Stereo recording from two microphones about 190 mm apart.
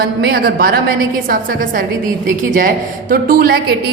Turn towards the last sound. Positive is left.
turn(degrees=-50)  # may be behind; listen again after turning